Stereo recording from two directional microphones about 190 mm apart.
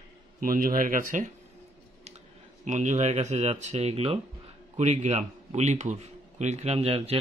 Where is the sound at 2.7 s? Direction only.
40° right (ahead or behind).